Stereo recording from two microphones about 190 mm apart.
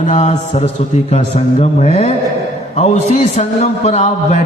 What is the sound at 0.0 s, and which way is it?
A man's voice, 40° left (ahead or behind).